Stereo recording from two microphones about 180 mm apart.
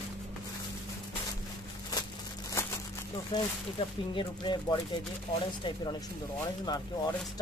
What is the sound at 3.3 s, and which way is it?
Speech, 25° left (ahead or behind).